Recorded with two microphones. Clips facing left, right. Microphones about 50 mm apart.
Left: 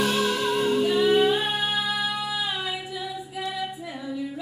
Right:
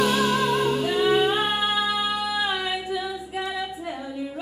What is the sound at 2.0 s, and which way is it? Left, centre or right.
Music, right.